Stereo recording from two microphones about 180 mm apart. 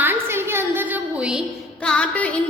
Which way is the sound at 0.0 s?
10° right (ahead or behind).